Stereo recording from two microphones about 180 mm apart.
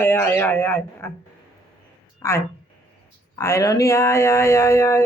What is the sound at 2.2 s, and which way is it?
Speech, 15° left (ahead or behind).